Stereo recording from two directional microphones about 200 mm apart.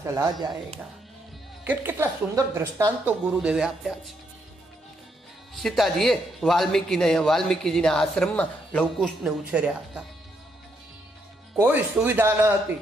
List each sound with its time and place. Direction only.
0.0 s speech: 15° right (ahead or behind)
1.6 s speech: 10° right (ahead or behind)
5.6 s a man's voice: centre (ahead or behind)
9.5 s a man's voice: 5° right (ahead or behind)
11.5 s speech: 10° right (ahead or behind)